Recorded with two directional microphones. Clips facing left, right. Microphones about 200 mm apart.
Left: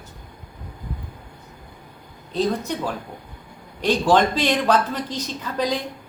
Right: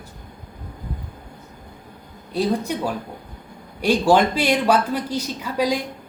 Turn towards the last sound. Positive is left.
turn(degrees=-10)  # may be behind; listen again after turning